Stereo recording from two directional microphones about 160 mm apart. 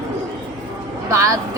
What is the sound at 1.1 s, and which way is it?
Speech, 20° right (ahead or behind).